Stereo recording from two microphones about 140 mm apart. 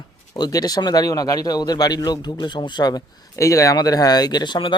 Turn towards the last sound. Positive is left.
turn(degrees=30)  # may be behind; listen again after turning